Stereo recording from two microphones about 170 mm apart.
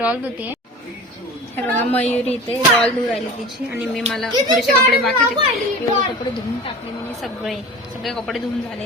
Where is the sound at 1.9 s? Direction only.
10° left (ahead or behind).